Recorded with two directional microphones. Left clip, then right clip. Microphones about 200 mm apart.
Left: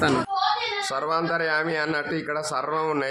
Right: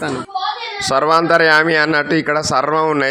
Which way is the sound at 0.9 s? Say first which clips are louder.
Right 15 dB; 35° right (ahead or behind).